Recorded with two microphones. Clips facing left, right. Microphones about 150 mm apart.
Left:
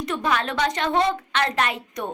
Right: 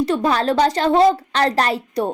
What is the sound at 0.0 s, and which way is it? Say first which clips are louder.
A woman's voice: right 7 dB; 30° right (ahead or behind).